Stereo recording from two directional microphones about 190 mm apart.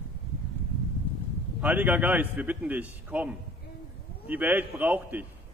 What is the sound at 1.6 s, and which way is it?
A man's voice, 10° right (ahead or behind).